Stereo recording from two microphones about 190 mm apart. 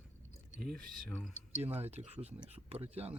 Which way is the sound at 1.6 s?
35° right (ahead or behind).